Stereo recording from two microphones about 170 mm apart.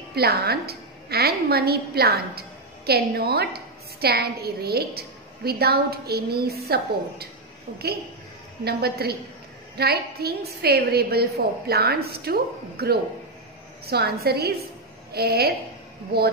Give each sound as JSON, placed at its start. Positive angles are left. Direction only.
{"t": 0.1, "sound": "a woman's voice", "side_deg": -70}
{"t": 8.6, "sound": "a woman's voice", "side_deg": -70}